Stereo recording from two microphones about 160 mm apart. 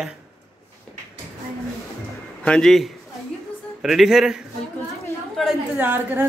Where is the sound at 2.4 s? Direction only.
5° left (ahead or behind).